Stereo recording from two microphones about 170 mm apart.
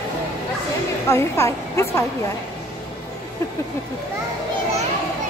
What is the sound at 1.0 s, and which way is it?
A woman's voice, 15° left (ahead or behind).